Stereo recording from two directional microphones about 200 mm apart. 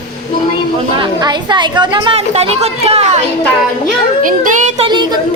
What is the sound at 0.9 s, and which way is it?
Speech, 25° right (ahead or behind).